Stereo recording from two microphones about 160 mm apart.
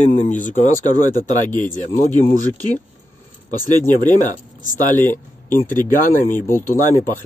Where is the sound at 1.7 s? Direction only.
10° left (ahead or behind).